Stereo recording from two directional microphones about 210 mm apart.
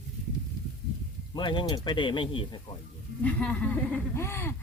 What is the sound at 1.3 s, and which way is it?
Speech, 20° left (ahead or behind).